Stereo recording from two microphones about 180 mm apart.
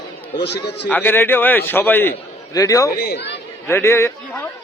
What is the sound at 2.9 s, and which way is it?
Speech, 65° left (ahead or behind).